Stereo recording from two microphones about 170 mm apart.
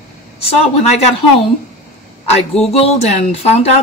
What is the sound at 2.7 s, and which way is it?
Speech, 40° left (ahead or behind).